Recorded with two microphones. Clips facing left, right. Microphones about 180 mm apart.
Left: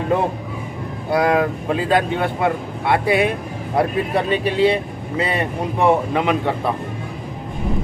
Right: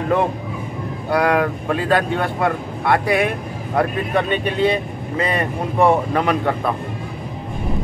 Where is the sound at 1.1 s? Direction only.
20° left (ahead or behind).